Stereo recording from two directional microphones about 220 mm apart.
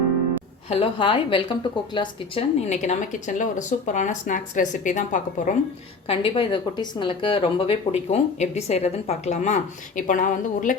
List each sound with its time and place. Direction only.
0.7 s a woman's voice: 25° left (ahead or behind)
6.1 s speech: 25° left (ahead or behind)